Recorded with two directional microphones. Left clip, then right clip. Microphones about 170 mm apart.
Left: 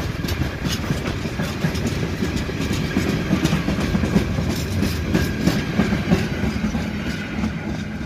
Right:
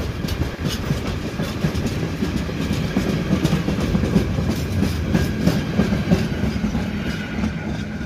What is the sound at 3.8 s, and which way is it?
Train, 45° right (ahead or behind).